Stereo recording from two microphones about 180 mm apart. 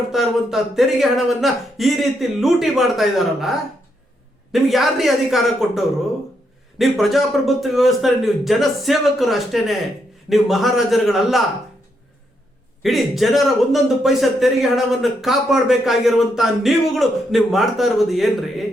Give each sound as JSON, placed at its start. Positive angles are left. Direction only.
{"t": 0.1, "sound": "a man's voice", "side_deg": 0}
{"t": 4.5, "sound": "a man's voice", "side_deg": 0}
{"t": 12.8, "sound": "a man's voice", "side_deg": 0}